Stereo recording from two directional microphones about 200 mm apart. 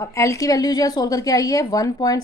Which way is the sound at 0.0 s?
15° left (ahead or behind).